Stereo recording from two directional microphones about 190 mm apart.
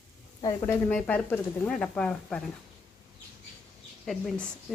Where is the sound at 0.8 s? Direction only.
10° left (ahead or behind).